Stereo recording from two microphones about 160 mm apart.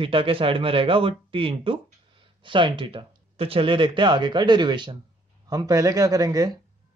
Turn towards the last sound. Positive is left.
turn(degrees=-20)  # may be behind; listen again after turning